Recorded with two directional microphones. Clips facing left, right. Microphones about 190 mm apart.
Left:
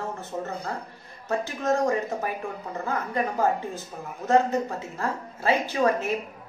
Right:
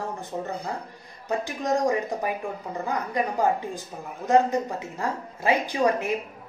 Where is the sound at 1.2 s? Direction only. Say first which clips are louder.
Left 1 dB; 15° right (ahead or behind).